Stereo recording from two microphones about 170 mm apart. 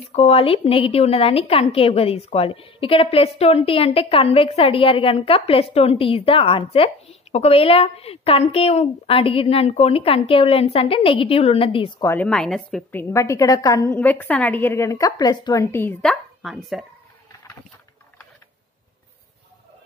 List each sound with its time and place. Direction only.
0.1 s a woman's voice: 35° left (ahead or behind)
12.0 s a woman's voice: 10° left (ahead or behind)
13.1 s a woman's voice: 15° left (ahead or behind); by 16.8 s centre (ahead or behind)